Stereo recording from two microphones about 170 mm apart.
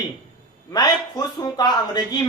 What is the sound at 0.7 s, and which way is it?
A woman's voice, 25° left (ahead or behind).